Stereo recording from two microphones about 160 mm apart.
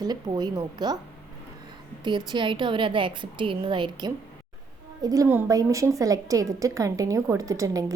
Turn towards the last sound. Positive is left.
turn(degrees=-20)  # may be behind; listen again after turning